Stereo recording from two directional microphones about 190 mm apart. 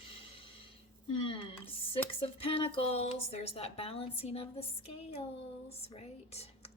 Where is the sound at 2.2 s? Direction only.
30° left (ahead or behind).